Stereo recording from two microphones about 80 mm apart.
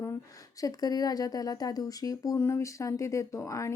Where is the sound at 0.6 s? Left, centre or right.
Left.